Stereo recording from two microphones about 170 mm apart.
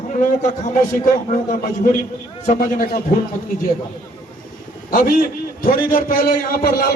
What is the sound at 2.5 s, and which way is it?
Speech, 60° left (ahead or behind).